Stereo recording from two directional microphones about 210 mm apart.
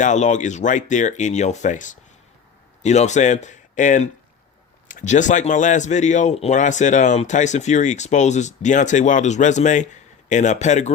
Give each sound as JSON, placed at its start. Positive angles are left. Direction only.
{"t": 0.0, "sound": "speech", "side_deg": 35}